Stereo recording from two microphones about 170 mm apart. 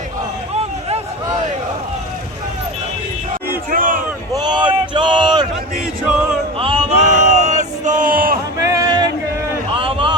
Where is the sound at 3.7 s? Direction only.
55° right (ahead or behind).